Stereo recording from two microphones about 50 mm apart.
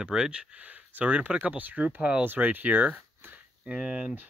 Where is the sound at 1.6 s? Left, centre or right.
Right.